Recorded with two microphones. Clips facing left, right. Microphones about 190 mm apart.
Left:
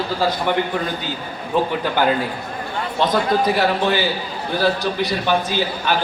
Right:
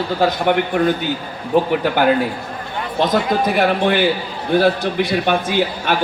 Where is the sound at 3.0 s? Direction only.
50° right (ahead or behind).